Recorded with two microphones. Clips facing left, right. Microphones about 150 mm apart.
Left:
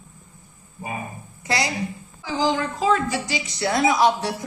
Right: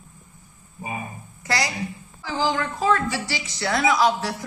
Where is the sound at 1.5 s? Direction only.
20° left (ahead or behind).